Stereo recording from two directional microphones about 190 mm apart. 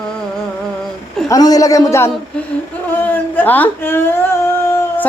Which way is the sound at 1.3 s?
20° left (ahead or behind).